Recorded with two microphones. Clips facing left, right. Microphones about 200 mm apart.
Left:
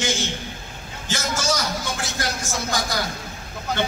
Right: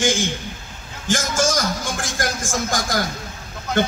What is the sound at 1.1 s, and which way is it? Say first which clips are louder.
A man's voice: right 5 dB; 50° right (ahead or behind).